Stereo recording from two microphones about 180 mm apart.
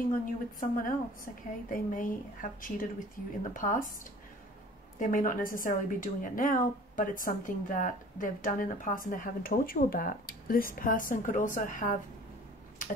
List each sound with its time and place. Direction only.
0.0 s a woman's voice: 50° left (ahead or behind)
4.9 s a woman's voice: 45° left (ahead or behind)